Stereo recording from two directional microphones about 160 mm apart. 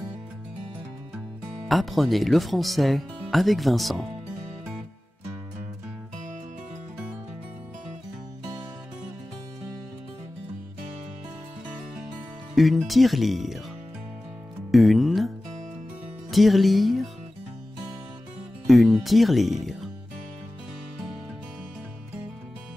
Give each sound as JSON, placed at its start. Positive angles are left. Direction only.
{"t": 1.7, "sound": "speech", "side_deg": 0}
{"t": 12.5, "sound": "speech", "side_deg": 0}
{"t": 14.7, "sound": "music", "side_deg": 0}
{"t": 18.7, "sound": "speech", "side_deg": 0}